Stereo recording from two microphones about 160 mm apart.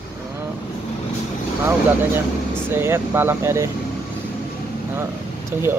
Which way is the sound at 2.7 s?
15° right (ahead or behind).